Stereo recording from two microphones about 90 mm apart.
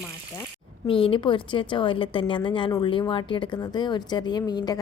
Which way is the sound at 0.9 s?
80° left.